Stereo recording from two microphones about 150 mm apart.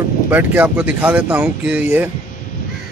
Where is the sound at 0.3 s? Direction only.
10° right (ahead or behind).